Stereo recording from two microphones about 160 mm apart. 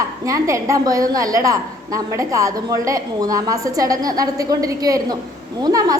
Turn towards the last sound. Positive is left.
turn(degrees=-25)  # may be behind; listen again after turning